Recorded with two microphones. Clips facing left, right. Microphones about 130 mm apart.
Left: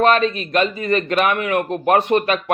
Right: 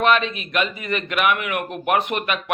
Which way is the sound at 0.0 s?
40° left (ahead or behind).